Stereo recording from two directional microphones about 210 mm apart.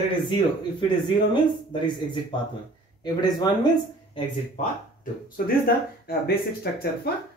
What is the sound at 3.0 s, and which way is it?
Speech, 20° left (ahead or behind).